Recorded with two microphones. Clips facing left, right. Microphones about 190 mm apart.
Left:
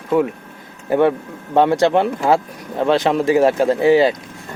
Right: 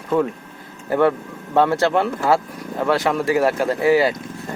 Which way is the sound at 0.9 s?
20° left (ahead or behind).